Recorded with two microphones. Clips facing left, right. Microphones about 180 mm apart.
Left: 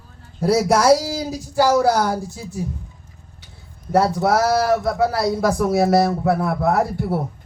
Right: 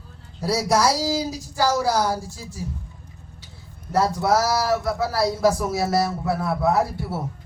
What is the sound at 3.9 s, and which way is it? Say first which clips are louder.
Speech: left 3 dB; 60° left (ahead or behind).